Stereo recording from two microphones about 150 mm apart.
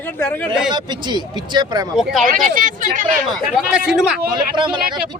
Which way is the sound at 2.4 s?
60° right (ahead or behind).